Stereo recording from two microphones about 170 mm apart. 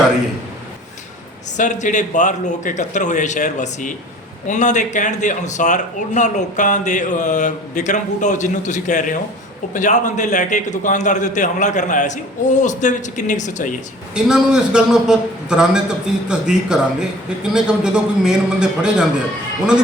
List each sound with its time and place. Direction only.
1.5 s a man's voice: 45° left (ahead or behind)
14.2 s a man's voice: 5° right (ahead or behind)